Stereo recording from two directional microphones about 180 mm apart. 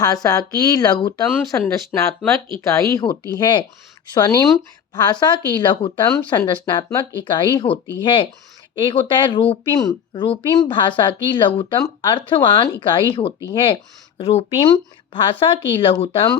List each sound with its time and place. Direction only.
0.0 s speech: 20° left (ahead or behind)